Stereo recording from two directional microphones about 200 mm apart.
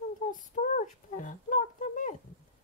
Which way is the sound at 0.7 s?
40° left (ahead or behind).